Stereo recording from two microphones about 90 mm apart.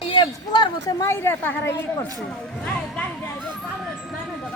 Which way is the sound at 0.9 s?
30° left (ahead or behind).